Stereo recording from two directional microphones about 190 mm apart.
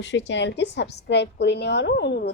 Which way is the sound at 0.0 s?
70° left (ahead or behind).